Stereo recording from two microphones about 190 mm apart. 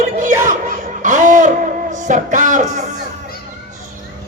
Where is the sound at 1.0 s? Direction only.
40° right (ahead or behind).